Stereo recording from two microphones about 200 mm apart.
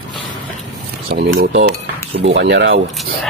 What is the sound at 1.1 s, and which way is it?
Speech, 55° right (ahead or behind).